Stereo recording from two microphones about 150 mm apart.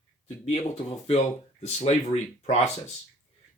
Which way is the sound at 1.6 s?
45° left (ahead or behind).